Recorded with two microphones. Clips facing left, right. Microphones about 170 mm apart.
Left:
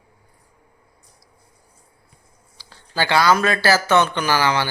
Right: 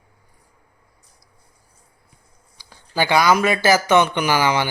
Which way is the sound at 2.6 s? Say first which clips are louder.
Right 2 dB; 15° right (ahead or behind).